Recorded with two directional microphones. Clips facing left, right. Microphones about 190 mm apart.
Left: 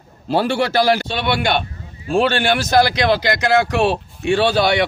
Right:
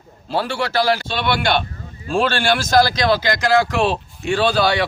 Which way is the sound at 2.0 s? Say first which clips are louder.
Left 2 dB; 20° left (ahead or behind).